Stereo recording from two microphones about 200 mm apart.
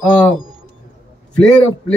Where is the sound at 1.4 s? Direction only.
5° left (ahead or behind).